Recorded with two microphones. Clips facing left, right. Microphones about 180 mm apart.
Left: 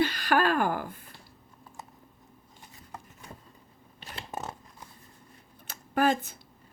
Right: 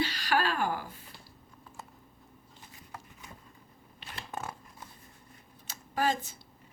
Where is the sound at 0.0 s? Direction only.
55° left (ahead or behind).